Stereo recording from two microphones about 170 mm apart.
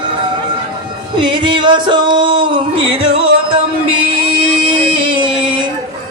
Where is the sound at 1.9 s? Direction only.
30° right (ahead or behind).